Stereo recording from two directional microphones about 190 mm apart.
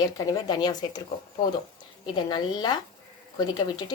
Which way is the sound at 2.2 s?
20° left (ahead or behind).